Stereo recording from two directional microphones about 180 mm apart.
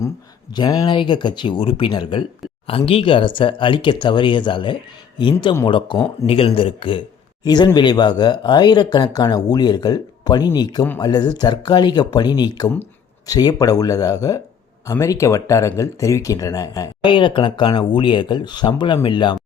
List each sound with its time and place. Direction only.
0.5 s speech: 25° left (ahead or behind)